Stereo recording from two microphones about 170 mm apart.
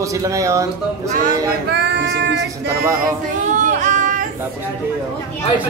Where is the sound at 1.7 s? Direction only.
85° right.